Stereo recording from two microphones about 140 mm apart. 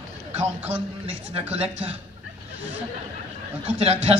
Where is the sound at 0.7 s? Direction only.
50° right (ahead or behind).